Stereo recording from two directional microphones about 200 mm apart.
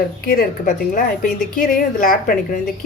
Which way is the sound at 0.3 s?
45° left (ahead or behind).